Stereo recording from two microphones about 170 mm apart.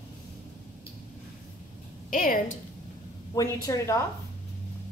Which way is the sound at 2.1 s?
55° left (ahead or behind).